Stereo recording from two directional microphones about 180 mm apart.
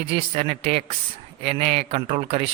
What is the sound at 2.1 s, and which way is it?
Speech, 40° right (ahead or behind).